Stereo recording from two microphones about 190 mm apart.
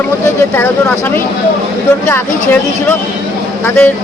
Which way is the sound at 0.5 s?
10° left (ahead or behind).